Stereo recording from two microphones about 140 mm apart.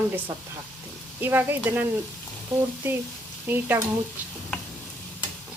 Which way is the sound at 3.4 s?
15° right (ahead or behind).